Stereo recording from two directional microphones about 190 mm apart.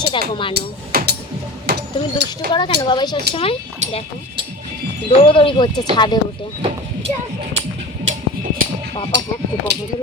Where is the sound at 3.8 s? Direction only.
40° right (ahead or behind).